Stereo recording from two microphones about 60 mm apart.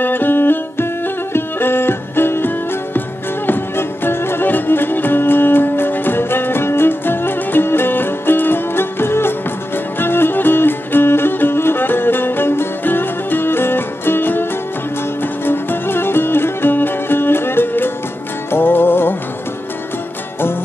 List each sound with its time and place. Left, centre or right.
0.0 s music: left
15.4 s music: left